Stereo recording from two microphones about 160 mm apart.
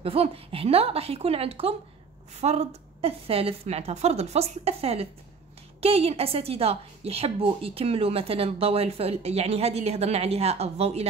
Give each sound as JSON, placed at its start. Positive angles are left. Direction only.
{"t": 0.0, "sound": "a woman's voice", "side_deg": -35}